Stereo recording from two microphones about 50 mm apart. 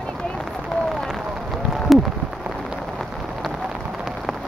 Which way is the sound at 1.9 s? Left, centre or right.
Centre.